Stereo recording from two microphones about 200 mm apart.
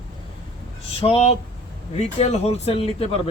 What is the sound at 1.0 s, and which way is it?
Speech, 30° left (ahead or behind).